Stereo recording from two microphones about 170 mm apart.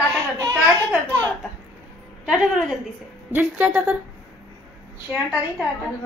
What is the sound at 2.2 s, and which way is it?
A woman's voice, 5° right (ahead or behind).